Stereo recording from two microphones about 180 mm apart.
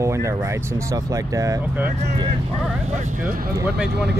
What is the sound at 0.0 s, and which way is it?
Speech, 15° right (ahead or behind).